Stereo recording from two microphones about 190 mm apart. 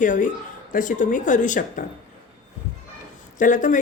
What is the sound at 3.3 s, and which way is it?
Speech, 40° left (ahead or behind).